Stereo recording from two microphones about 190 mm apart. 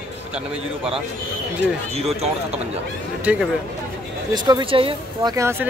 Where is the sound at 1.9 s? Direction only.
35° right (ahead or behind).